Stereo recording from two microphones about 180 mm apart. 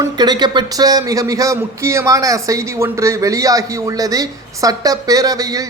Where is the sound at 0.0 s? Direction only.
25° right (ahead or behind).